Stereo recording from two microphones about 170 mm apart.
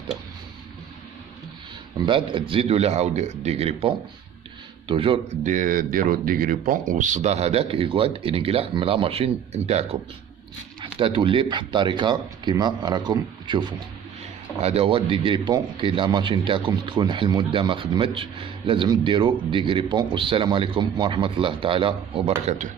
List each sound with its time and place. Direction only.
2.0 s speech: 30° right (ahead or behind)